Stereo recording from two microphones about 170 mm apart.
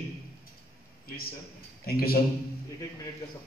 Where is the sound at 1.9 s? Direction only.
60° left (ahead or behind).